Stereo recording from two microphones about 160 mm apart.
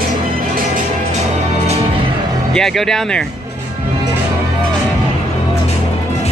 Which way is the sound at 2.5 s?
Centre (ahead or behind).